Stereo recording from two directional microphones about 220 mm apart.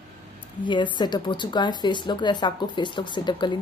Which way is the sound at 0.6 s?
20° left (ahead or behind).